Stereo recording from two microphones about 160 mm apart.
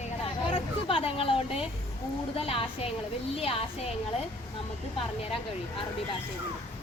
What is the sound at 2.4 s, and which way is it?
Speech, 35° left (ahead or behind).